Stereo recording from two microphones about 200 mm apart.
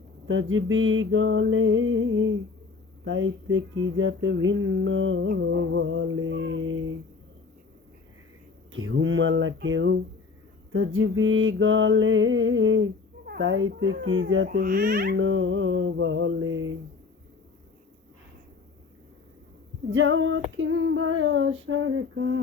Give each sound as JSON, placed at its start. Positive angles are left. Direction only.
{"t": 0.3, "sound": "a sound", "side_deg": -75}
{"t": 3.0, "sound": "female singing", "side_deg": -75}
{"t": 8.7, "sound": "female singing", "side_deg": -75}
{"t": 10.7, "sound": "female singing", "side_deg": -85}
{"t": 13.2, "sound": "speech", "side_deg": -60}
{"t": 15.2, "sound": "female singing", "side_deg": -75}
{"t": 19.9, "sound": "female singing", "side_deg": -70}